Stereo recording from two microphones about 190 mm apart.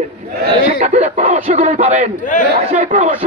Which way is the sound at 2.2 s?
40° left (ahead or behind).